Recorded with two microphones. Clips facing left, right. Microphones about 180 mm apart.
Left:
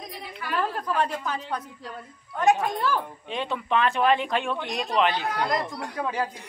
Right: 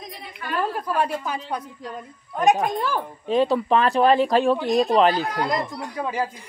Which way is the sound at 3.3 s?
40° right (ahead or behind).